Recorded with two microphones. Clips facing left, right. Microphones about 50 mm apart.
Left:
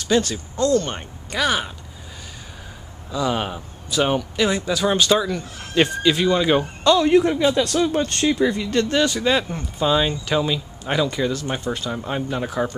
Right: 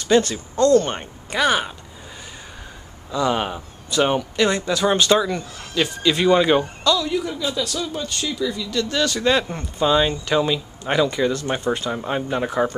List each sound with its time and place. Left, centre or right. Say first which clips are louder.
0.0 s speech: right 3 dB; centre
3.1 s speech: right 2 dB; centre
6.2 s speech: right 6 dB; centre
6.8 s a man's voice: left 6 dB; left
9.0 s speech: even; centre